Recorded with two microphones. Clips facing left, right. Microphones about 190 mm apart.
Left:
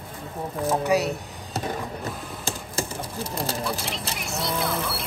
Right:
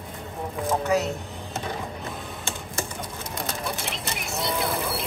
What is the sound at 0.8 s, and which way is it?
Speech, 15° left (ahead or behind).